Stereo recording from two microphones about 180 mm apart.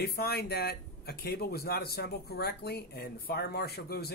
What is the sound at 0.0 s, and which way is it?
Speech, 60° left (ahead or behind).